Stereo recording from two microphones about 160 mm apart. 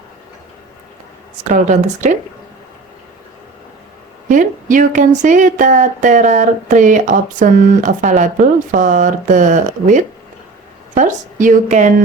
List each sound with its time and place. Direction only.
1.5 s speech: 50° right (ahead or behind)
4.3 s speech: 55° right (ahead or behind)